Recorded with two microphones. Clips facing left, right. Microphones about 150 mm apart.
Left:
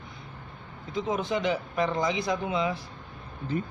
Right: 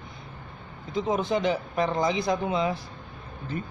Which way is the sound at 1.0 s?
35° right (ahead or behind).